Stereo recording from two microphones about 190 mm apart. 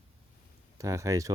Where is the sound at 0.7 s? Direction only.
15° right (ahead or behind).